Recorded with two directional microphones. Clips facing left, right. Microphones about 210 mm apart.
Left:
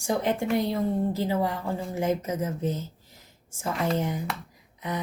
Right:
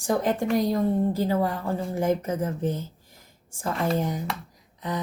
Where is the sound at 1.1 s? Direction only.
20° left (ahead or behind).